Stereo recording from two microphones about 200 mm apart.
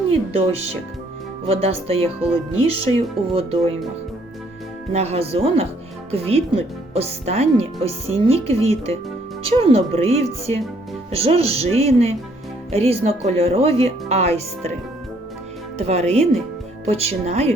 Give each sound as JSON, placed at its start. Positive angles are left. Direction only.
{"t": 0.1, "sound": "speech", "side_deg": -30}
{"t": 4.9, "sound": "speech", "side_deg": -30}
{"t": 15.8, "sound": "speech", "side_deg": -35}